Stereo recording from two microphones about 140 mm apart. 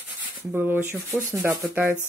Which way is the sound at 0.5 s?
15° right (ahead or behind).